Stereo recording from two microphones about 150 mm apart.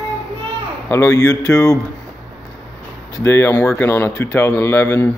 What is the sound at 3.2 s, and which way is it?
A man's voice, 15° left (ahead or behind).